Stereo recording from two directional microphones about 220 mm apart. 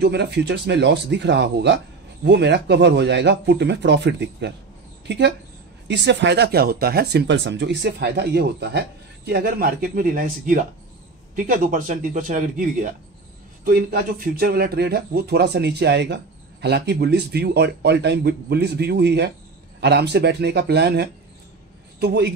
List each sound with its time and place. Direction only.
0.0 s a woman's voice: 50° right (ahead or behind)